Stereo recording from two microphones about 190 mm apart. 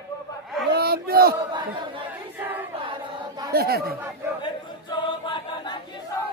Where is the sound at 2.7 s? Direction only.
25° right (ahead or behind).